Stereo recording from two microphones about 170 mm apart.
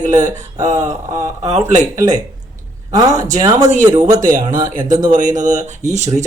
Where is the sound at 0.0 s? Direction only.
45° right (ahead or behind).